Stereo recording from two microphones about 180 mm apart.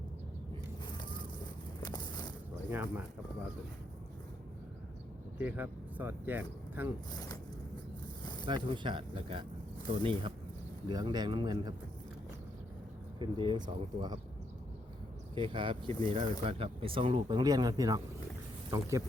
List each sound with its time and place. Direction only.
1.8 s a sound: 25° left (ahead or behind)
2.6 s a man's voice: 10° right (ahead or behind)
5.4 s speech: 10° right (ahead or behind)
7.1 s speech: 20° left (ahead or behind)
8.2 s a sound: 25° left (ahead or behind)
8.4 s speech: 25° right (ahead or behind)
13.1 s speech: 25° right (ahead or behind)
15.4 s a man's voice: 30° right (ahead or behind)